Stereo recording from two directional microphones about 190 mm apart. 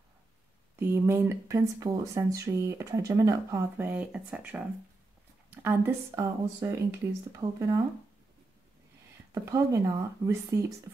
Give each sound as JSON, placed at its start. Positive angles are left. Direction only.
{"t": 0.7, "sound": "speech", "side_deg": -15}
{"t": 9.3, "sound": "speech", "side_deg": -15}